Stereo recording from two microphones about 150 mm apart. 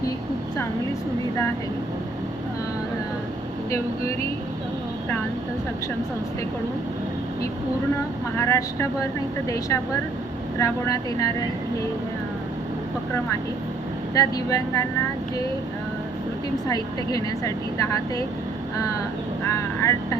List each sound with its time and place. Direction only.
8.4 s speech: 20° left (ahead or behind)
10.6 s speech: 20° left (ahead or behind)
14.1 s speech: 25° left (ahead or behind)
16.6 s speech: 25° left (ahead or behind)
19.5 s speech: 20° left (ahead or behind)